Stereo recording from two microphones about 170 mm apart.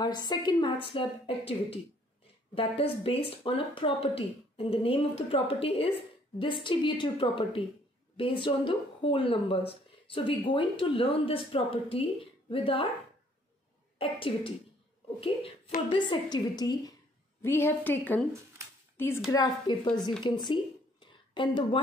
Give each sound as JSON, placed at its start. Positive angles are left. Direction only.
{"t": 0.0, "sound": "a woman's voice", "side_deg": 25}
{"t": 13.9, "sound": "a woman's voice", "side_deg": 30}
{"t": 19.3, "sound": "a woman's voice", "side_deg": 25}
{"t": 21.0, "sound": "a sound", "side_deg": 30}